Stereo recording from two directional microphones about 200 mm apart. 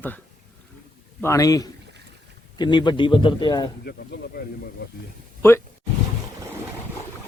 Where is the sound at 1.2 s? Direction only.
15° left (ahead or behind).